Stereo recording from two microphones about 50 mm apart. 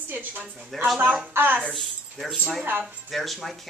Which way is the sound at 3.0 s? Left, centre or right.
Centre.